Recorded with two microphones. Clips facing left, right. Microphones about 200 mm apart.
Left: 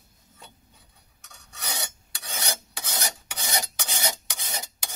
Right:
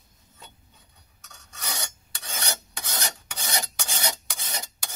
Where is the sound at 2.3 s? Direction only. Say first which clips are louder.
Even; 10° left (ahead or behind).